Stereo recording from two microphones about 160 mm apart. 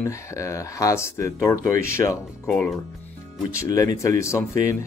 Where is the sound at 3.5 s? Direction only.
20° left (ahead or behind).